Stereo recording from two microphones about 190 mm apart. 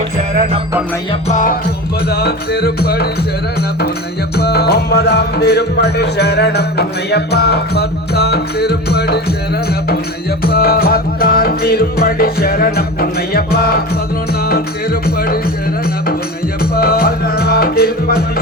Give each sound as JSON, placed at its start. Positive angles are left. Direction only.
{"t": 1.3, "sound": "music", "side_deg": 45}
{"t": 2.0, "sound": "music", "side_deg": 55}
{"t": 4.4, "sound": "music", "side_deg": 60}
{"t": 10.4, "sound": "music", "side_deg": 55}
{"t": 15.0, "sound": "music", "side_deg": 50}
{"t": 16.7, "sound": "music", "side_deg": 50}